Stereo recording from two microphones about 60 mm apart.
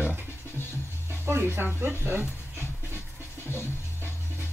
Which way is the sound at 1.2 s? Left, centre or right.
Right.